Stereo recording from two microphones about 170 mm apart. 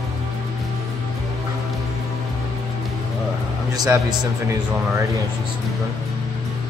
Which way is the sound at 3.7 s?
20° right (ahead or behind).